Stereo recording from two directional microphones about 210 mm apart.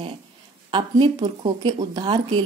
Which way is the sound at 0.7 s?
20° right (ahead or behind).